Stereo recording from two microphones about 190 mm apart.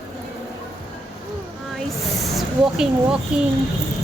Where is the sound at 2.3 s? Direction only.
Centre (ahead or behind).